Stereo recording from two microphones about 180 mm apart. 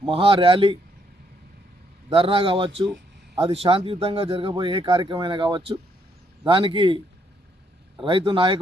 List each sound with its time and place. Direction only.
0.0 s speech: 30° right (ahead or behind)
2.0 s speech: 30° right (ahead or behind)
8.0 s speech: 30° right (ahead or behind)